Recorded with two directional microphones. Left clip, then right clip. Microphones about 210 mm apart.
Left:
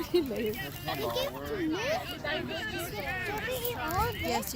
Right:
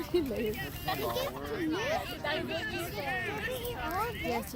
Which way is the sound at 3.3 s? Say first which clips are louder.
Left 2 dB; 50° left (ahead or behind).